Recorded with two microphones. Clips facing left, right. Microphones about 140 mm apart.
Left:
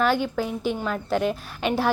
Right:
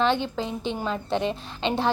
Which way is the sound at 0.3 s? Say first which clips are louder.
Left 3 dB; 25° right (ahead or behind).